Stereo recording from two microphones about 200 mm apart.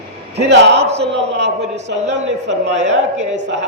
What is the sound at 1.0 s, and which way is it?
Speech, 60° right (ahead or behind).